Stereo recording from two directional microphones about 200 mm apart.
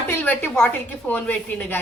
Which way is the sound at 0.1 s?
10° left (ahead or behind).